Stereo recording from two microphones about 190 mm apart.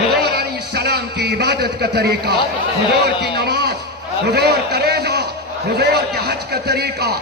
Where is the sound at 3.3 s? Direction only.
60° right (ahead or behind).